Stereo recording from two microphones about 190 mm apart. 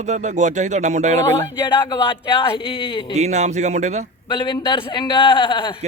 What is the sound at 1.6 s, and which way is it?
Speech, 25° left (ahead or behind).